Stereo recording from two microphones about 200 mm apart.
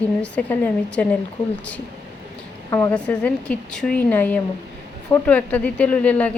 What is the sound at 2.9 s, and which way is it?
A woman's voice, 5° left (ahead or behind).